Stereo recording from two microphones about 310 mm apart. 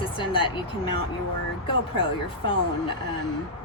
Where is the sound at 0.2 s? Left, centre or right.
Centre.